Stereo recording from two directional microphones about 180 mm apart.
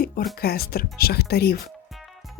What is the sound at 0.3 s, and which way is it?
Speech, 60° left (ahead or behind).